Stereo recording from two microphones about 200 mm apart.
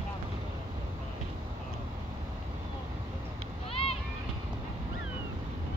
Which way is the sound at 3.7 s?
30° left (ahead or behind).